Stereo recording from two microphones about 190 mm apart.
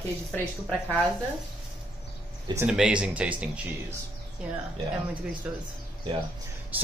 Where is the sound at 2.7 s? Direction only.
5° right (ahead or behind).